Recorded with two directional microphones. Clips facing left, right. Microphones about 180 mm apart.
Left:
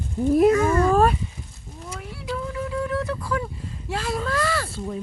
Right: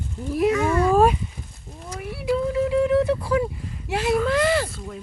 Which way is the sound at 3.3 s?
20° right (ahead or behind).